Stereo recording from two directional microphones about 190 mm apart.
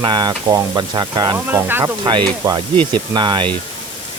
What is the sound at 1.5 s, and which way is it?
Speech, 10° right (ahead or behind).